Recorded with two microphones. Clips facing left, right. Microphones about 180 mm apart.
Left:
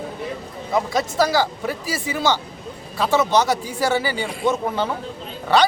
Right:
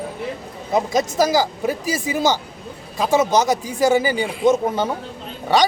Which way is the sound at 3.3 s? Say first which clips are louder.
Right 1 dB; 15° right (ahead or behind).